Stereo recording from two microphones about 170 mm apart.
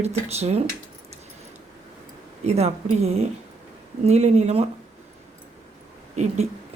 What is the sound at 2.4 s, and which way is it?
Speech, 40° right (ahead or behind).